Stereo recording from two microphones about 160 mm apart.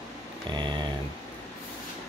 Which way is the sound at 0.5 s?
30° right (ahead or behind).